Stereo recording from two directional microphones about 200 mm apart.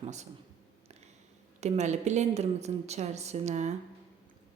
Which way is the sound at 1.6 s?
35° right (ahead or behind).